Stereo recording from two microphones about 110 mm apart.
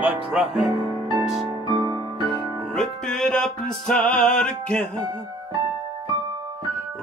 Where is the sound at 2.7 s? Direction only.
5° left (ahead or behind).